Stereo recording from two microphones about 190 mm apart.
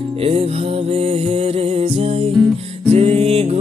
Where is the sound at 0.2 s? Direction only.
30° right (ahead or behind).